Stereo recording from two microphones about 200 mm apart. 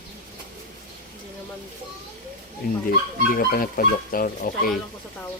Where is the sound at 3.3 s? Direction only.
45° left (ahead or behind).